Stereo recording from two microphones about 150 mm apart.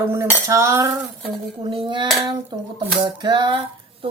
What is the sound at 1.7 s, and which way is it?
Speech, 35° right (ahead or behind).